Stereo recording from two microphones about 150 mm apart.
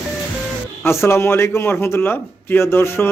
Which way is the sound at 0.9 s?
15° left (ahead or behind).